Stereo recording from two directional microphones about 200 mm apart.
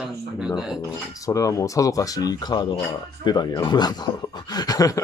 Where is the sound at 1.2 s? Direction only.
15° left (ahead or behind).